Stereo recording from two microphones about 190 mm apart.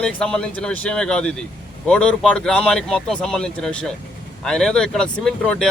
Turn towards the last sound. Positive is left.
turn(degrees=5)  # may be behind; listen again after turning